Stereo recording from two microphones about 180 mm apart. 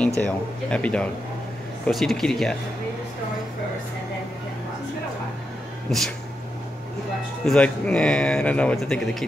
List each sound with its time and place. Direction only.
0.2 s speech: 5° left (ahead or behind)
5.9 s speech: centre (ahead or behind)
7.4 s speech: 5° left (ahead or behind)